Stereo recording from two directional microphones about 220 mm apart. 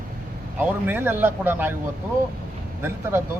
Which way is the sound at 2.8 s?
10° right (ahead or behind).